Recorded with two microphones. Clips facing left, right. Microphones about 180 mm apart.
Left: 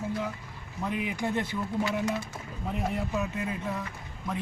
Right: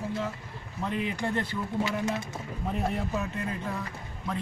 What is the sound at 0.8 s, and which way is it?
Speech, 5° left (ahead or behind).